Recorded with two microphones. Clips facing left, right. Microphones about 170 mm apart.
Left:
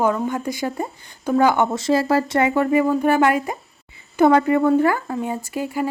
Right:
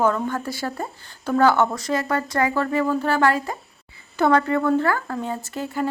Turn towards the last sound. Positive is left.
turn(degrees=10)  # may be behind; listen again after turning